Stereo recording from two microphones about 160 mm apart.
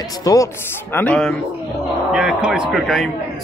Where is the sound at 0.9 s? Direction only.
5° left (ahead or behind).